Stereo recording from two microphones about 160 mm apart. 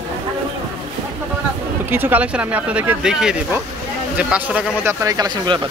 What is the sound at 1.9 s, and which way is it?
A man's voice, 10° right (ahead or behind).